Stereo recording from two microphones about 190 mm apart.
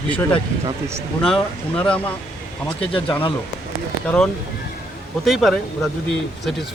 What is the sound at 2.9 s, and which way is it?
Speech, 25° left (ahead or behind).